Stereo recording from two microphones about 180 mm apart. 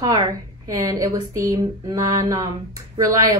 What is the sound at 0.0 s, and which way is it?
A woman's voice, 20° right (ahead or behind).